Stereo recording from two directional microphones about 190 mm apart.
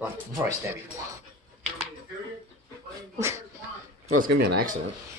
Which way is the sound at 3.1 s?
15° right (ahead or behind).